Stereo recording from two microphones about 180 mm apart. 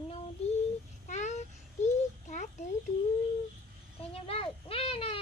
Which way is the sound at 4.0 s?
30° left (ahead or behind).